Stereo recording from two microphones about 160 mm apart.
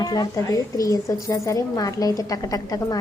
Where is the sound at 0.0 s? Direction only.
25° left (ahead or behind).